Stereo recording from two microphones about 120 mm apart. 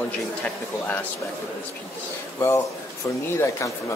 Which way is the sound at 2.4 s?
20° left (ahead or behind).